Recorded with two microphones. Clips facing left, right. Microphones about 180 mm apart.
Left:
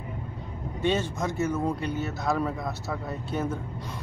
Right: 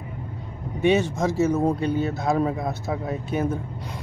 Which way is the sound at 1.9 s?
30° right (ahead or behind).